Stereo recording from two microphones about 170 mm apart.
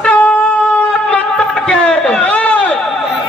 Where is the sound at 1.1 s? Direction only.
5° left (ahead or behind).